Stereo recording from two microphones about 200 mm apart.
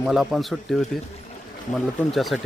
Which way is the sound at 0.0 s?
Centre (ahead or behind).